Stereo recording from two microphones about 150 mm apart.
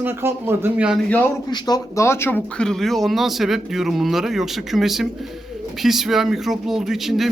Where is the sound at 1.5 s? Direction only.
30° left (ahead or behind).